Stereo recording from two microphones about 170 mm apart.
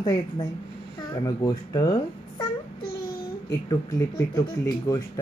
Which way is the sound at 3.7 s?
25° left (ahead or behind).